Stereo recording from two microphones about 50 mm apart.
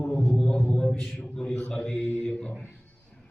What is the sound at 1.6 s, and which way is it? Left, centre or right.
Speech, left.